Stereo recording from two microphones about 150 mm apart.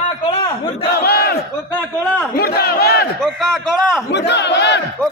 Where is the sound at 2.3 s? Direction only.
90° left.